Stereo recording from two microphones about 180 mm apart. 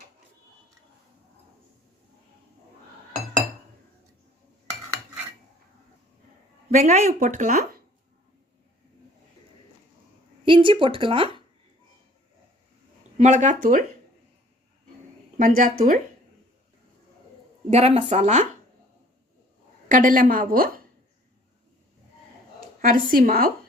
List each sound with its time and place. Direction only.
6.7 s speech: 40° right (ahead or behind)
10.4 s speech: 25° right (ahead or behind)
13.1 s speech: 40° right (ahead or behind)
15.4 s speech: 50° right (ahead or behind)
17.7 s speech: 35° right (ahead or behind)
19.9 s speech: 50° right (ahead or behind)
22.8 s speech: 50° right (ahead or behind)